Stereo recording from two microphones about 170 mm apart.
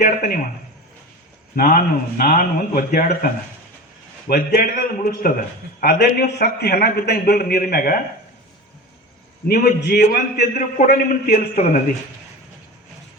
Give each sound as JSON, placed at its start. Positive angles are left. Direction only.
{"t": 0.0, "sound": "a sound", "side_deg": 50}
{"t": 1.5, "sound": "a man's voice", "side_deg": 55}
{"t": 9.5, "sound": "a man's voice", "side_deg": 65}
{"t": 10.6, "sound": "a man's voice", "side_deg": 55}